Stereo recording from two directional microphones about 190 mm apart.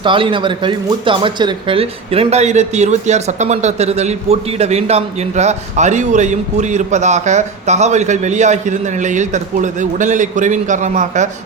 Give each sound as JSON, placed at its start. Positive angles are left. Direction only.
{"t": 0.0, "sound": "speech", "side_deg": -25}